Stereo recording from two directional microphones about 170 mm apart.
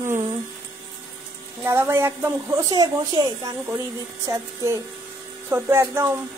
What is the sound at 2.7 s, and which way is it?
Speech, 25° right (ahead or behind).